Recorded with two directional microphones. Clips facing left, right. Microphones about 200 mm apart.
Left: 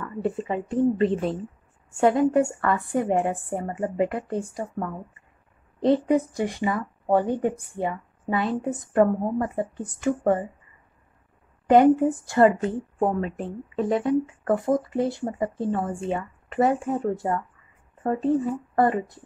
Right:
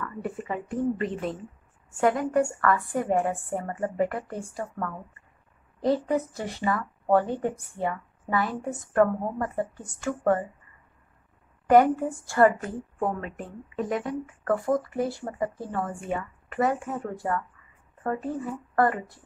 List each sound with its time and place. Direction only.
0.0 s a woman's voice: 25° left (ahead or behind)
11.7 s a woman's voice: 20° left (ahead or behind)